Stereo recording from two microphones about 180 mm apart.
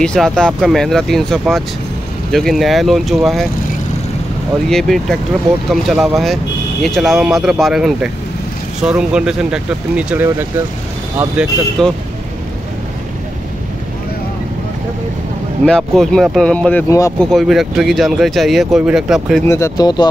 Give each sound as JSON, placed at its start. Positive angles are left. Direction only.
{"t": 0.0, "sound": "speech", "side_deg": 5}
{"t": 4.6, "sound": "speech", "side_deg": 0}
{"t": 11.8, "sound": "speech", "side_deg": 0}
{"t": 15.6, "sound": "speech", "side_deg": 5}
{"t": 17.3, "sound": "speech", "side_deg": 0}
{"t": 19.4, "sound": "speech", "side_deg": 15}